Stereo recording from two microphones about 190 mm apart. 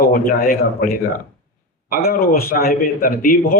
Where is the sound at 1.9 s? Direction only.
50° left (ahead or behind).